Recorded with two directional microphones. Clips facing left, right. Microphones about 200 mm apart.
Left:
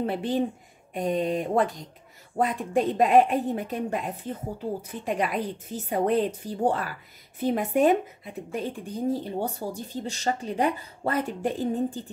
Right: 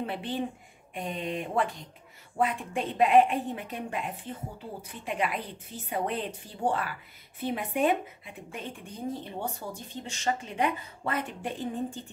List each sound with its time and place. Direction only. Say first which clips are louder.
0.0 s speech: left 6 dB; 40° left (ahead or behind)